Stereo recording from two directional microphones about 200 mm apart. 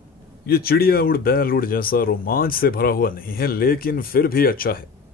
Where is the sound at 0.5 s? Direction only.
50° left (ahead or behind).